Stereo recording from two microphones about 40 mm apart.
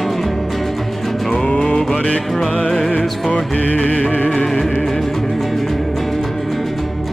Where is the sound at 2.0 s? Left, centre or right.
Left.